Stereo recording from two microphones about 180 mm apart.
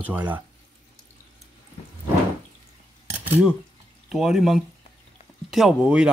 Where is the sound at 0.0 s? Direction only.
10° right (ahead or behind).